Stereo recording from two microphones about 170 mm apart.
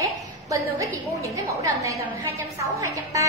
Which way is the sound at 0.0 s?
20° right (ahead or behind).